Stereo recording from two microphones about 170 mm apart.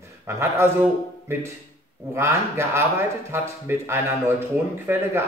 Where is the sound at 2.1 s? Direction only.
15° right (ahead or behind).